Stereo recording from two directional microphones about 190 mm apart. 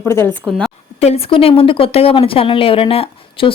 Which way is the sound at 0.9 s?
35° left (ahead or behind).